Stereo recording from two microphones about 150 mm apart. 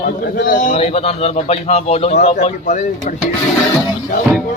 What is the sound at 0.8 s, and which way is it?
A man's voice, 45° left (ahead or behind).